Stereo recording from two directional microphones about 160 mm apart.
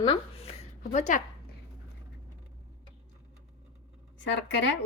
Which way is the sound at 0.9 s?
50° left (ahead or behind).